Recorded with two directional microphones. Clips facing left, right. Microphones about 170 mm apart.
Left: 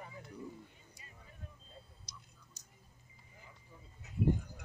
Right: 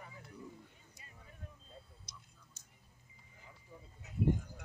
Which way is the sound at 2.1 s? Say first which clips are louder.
Left 1 dB; 55° right (ahead or behind).